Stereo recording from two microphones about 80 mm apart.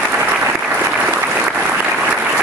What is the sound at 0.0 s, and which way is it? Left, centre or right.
Applause, centre.